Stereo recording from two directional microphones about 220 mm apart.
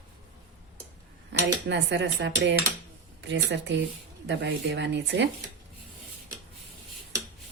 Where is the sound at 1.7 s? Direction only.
55° right (ahead or behind).